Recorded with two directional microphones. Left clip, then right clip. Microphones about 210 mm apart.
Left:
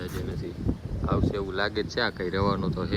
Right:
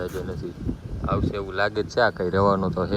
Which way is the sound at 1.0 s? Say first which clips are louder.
Right 2 dB; 20° left (ahead or behind).